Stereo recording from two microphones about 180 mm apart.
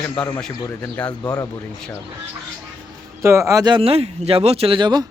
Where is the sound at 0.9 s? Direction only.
10° left (ahead or behind).